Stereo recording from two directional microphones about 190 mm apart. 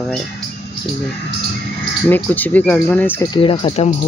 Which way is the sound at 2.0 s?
10° left (ahead or behind).